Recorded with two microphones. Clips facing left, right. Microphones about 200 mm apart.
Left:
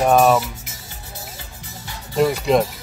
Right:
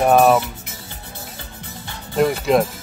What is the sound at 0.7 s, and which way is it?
Music, 55° right (ahead or behind).